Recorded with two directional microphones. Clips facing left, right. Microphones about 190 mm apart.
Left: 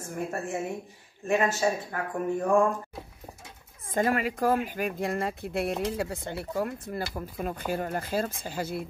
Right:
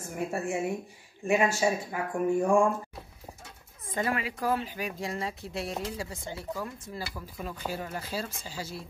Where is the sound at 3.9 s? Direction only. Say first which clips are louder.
Left 5 dB; 45° left (ahead or behind).